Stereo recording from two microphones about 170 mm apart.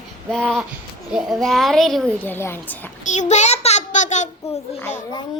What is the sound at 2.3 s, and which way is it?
Speech, 15° left (ahead or behind).